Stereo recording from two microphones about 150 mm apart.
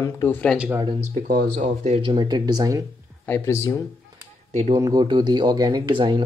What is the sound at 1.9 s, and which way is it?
Speech, 35° right (ahead or behind).